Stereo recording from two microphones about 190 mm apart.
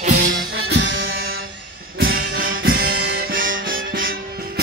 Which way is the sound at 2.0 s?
50° right (ahead or behind).